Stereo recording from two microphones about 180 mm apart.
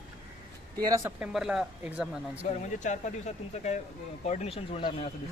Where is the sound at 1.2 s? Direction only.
Centre (ahead or behind).